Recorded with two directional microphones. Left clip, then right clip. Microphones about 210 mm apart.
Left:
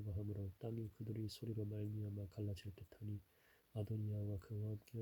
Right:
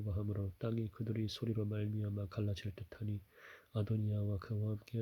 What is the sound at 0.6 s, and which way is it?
Speech, 30° right (ahead or behind).